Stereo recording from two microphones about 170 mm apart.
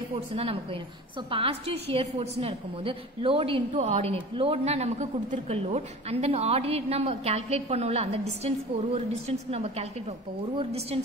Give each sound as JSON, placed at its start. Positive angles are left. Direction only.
{"t": 0.1, "sound": "a man's voice", "side_deg": -35}